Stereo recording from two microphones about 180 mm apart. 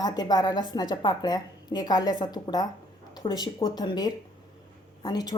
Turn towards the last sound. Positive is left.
turn(degrees=20)  # may be behind; listen again after turning